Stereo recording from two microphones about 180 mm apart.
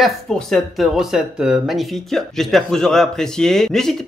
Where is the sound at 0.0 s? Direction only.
Centre (ahead or behind).